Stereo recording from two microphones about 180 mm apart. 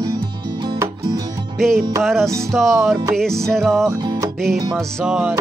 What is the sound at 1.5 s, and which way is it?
Music, centre (ahead or behind).